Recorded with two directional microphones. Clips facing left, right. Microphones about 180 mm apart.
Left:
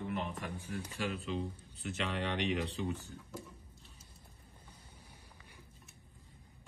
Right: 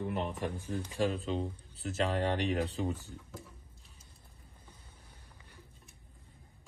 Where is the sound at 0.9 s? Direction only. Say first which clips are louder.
Right 6 dB; 35° right (ahead or behind).